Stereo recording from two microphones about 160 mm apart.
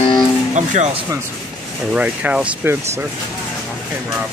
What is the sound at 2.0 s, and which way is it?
Music, 10° right (ahead or behind).